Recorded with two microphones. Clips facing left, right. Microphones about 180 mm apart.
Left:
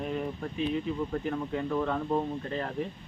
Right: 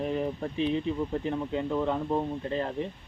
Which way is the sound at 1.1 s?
20° right (ahead or behind).